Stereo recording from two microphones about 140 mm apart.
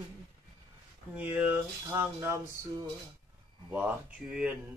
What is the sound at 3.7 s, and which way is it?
Speech, 10° right (ahead or behind).